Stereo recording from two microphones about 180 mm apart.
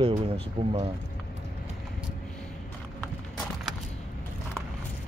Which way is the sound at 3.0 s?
5° left (ahead or behind).